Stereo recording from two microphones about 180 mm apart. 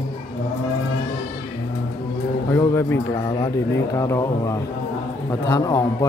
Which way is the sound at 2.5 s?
15° left (ahead or behind).